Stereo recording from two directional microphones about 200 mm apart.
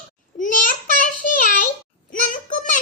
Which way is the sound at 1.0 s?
40° left (ahead or behind).